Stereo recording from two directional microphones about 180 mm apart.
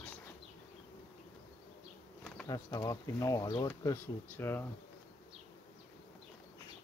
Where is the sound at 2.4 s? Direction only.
20° left (ahead or behind).